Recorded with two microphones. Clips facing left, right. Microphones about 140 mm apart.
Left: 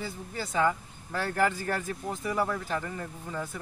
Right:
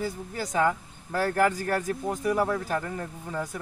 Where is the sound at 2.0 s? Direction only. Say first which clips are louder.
Right 4 dB; 10° right (ahead or behind).